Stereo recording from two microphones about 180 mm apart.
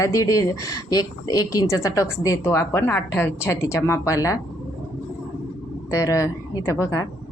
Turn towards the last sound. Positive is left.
turn(degrees=20)  # may be behind; listen again after turning